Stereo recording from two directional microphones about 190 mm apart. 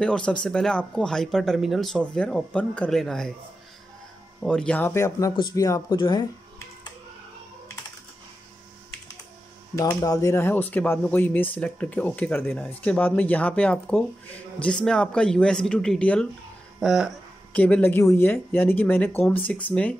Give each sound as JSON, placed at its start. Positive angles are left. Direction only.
{"t": 0.0, "sound": "speech", "side_deg": 5}
{"t": 4.4, "sound": "speech", "side_deg": 5}
{"t": 9.8, "sound": "speech", "side_deg": 15}
{"t": 16.8, "sound": "a sound", "side_deg": 0}
{"t": 17.6, "sound": "speech", "side_deg": 5}